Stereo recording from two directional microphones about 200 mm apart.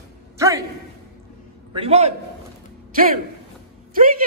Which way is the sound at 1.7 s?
30° right (ahead or behind).